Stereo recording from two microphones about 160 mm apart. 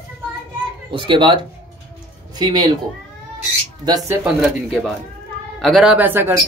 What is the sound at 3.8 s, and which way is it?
Speech, 25° right (ahead or behind).